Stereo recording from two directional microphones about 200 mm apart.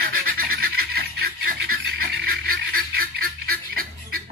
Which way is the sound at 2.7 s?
50° right (ahead or behind).